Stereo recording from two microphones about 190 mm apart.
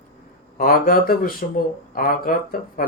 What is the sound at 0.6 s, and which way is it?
Speech, 50° left (ahead or behind).